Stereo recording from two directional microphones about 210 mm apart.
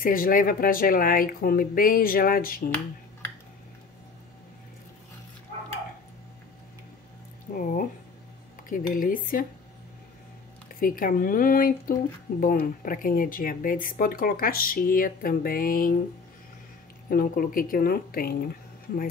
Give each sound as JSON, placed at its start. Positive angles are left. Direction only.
{"t": 0.0, "sound": "speech", "side_deg": 40}
{"t": 7.5, "sound": "speech", "side_deg": 50}
{"t": 8.6, "sound": "speech", "side_deg": 40}
{"t": 10.8, "sound": "speech", "side_deg": 40}
{"t": 17.1, "sound": "speech", "side_deg": 45}